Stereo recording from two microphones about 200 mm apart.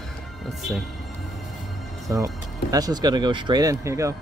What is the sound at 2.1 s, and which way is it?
Speech, 15° right (ahead or behind).